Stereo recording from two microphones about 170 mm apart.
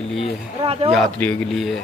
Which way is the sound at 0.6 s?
35° right (ahead or behind).